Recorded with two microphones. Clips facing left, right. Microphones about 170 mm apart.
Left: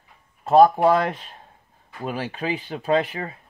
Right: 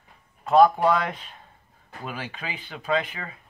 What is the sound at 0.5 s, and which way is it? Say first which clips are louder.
A man's voice: left 3 dB; 35° left (ahead or behind).